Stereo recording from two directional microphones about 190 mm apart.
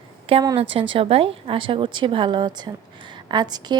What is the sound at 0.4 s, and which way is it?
A woman's voice, 30° right (ahead or behind).